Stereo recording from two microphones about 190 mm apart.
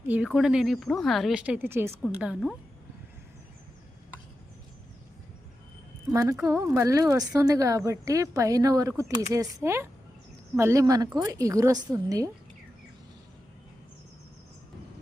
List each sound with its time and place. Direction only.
0.1 s speech: 5° right (ahead or behind)
6.1 s a woman's voice: 15° right (ahead or behind)